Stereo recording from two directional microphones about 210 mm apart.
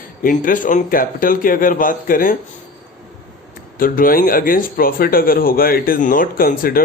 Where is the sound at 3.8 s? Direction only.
45° left (ahead or behind).